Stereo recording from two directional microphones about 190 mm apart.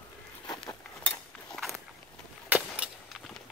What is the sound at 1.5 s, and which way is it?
Walk, centre (ahead or behind).